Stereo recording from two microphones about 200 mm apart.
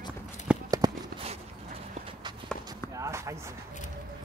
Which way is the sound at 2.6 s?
15° right (ahead or behind).